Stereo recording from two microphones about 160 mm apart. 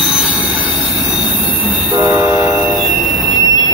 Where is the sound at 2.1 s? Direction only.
15° right (ahead or behind).